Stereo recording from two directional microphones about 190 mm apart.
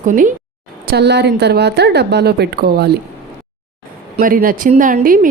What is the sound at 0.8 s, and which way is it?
A woman's voice, 60° right (ahead or behind).